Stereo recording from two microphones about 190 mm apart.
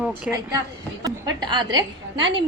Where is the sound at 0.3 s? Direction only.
5° right (ahead or behind).